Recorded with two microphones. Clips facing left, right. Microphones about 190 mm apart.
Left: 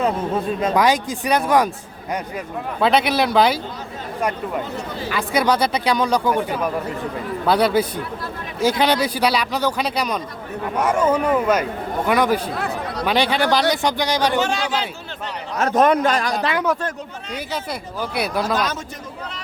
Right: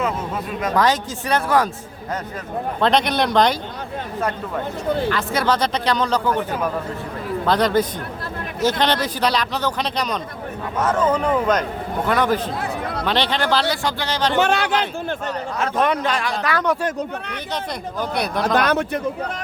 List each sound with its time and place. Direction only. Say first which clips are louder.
0.0 s speech: left 4 dB; 30° left (ahead or behind)
0.8 s speech: right 1 dB; 10° left (ahead or behind)
2.8 s speech: left 1 dB; 5° left (ahead or behind)
14.3 s a man's voice: right 2 dB; 60° right (ahead or behind)
15.6 s a man's voice: left 5 dB; 45° left (ahead or behind)
18.0 s speech: even; 5° left (ahead or behind)
18.4 s a man's voice: right 4 dB; 60° right (ahead or behind)